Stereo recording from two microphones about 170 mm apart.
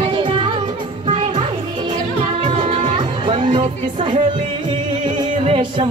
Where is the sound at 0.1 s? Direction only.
30° right (ahead or behind).